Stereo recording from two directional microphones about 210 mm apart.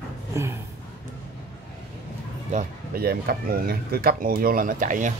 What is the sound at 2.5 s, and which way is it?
Speech, 45° right (ahead or behind).